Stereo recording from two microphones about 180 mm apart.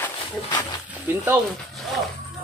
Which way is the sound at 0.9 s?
10° right (ahead or behind).